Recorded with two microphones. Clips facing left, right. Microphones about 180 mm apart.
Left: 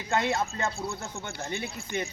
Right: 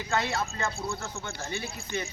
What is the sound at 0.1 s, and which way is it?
Speech, 25° left (ahead or behind).